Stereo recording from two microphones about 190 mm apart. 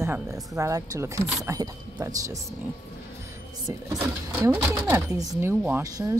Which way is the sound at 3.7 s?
15° right (ahead or behind).